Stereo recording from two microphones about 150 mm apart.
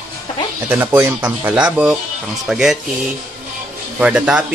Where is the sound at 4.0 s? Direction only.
5° right (ahead or behind).